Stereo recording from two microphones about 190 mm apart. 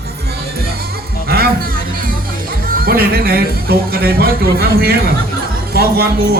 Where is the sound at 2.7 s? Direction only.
55° right (ahead or behind).